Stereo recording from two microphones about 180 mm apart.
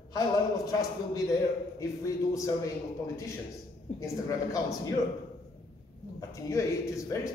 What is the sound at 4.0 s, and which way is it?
Speech, 15° left (ahead or behind).